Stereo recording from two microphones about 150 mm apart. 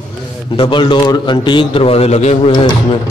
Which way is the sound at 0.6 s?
35° left (ahead or behind).